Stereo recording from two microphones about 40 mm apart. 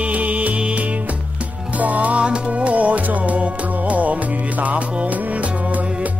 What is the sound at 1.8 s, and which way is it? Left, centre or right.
Music, right.